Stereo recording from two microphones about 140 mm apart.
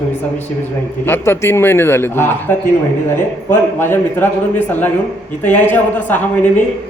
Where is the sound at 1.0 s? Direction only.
15° left (ahead or behind).